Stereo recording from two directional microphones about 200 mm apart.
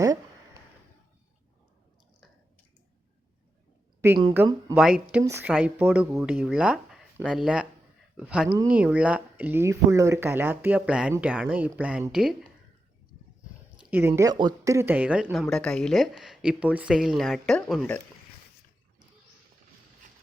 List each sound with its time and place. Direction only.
0.0 s a sound: 15° right (ahead or behind)
4.0 s speech: 15° right (ahead or behind)
13.9 s speech: 10° right (ahead or behind); by 18.0 s 5° left (ahead or behind)